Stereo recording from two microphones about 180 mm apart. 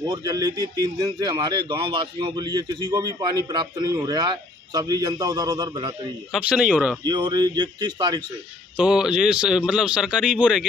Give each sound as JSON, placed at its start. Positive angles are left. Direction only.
{"t": 0.0, "sound": "a man's voice", "side_deg": -20}
{"t": 6.3, "sound": "speech", "side_deg": -5}
{"t": 7.1, "sound": "a man's voice", "side_deg": -25}
{"t": 8.7, "sound": "speech", "side_deg": -5}